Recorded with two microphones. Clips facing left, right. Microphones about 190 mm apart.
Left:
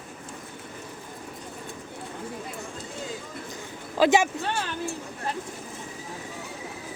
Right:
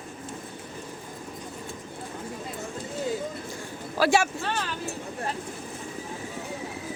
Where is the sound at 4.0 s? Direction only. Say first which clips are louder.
Left 2 dB; 20° left (ahead or behind).